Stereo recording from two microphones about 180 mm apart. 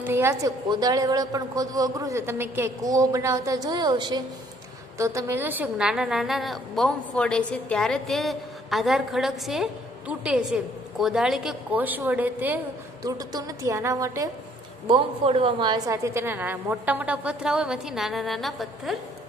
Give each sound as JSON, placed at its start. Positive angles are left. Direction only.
{"t": 0.0, "sound": "a woman's voice", "side_deg": -15}
{"t": 14.9, "sound": "a woman's voice", "side_deg": -30}